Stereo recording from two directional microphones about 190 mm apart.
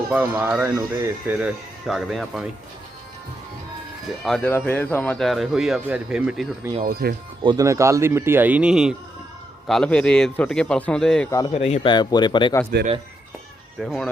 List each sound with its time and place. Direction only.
0.1 s speech: 10° right (ahead or behind)
1.9 s speech: centre (ahead or behind)
4.2 s speech: centre (ahead or behind)
6.8 s speech: 50° right (ahead or behind)
7.4 s speech: 15° right (ahead or behind); by 11.3 s 5° left (ahead or behind)
11.3 s a man's voice: 20° left (ahead or behind)
11.5 s a man's voice: 35° left (ahead or behind)
13.7 s speech: centre (ahead or behind)